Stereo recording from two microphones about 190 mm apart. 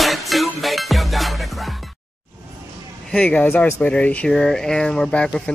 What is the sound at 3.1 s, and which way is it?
Speech, 5° left (ahead or behind).